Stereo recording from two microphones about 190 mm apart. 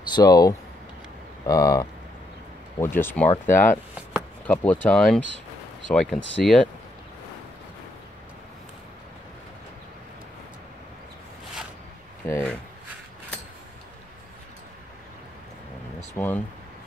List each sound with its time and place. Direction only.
0.1 s speech: 20° left (ahead or behind); by 6.6 s centre (ahead or behind)
12.3 s speech: 15° left (ahead or behind)
16.2 s speech: 10° left (ahead or behind)